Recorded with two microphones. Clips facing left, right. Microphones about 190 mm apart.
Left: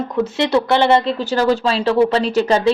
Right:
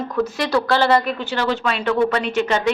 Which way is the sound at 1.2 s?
40° left (ahead or behind).